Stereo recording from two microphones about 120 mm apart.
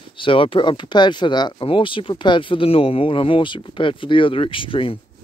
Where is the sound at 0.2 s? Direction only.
45° left (ahead or behind).